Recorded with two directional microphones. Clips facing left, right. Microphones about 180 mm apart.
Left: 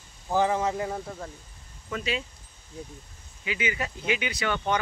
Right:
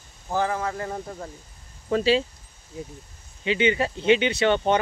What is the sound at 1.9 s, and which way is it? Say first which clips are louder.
Speech: right 10 dB; 30° right (ahead or behind).